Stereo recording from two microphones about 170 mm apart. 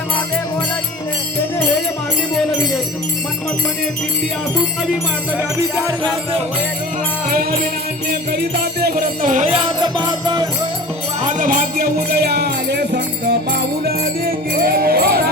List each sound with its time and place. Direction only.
8.3 s music: 65° right (ahead or behind); by 10.5 s 25° right (ahead or behind)
11.2 s speech: 50° right (ahead or behind); by 13.3 s 80° right
13.8 s speech: 60° right (ahead or behind)